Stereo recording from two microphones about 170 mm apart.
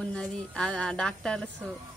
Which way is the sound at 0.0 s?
5° left (ahead or behind).